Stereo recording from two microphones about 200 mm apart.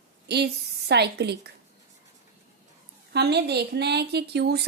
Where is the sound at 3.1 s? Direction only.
55° right (ahead or behind).